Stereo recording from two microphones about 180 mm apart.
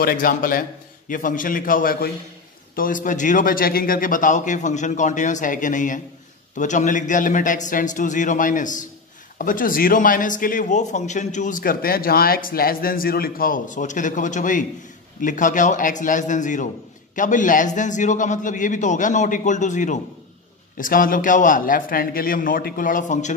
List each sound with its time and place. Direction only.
0.0 s a man's voice: 50° left (ahead or behind)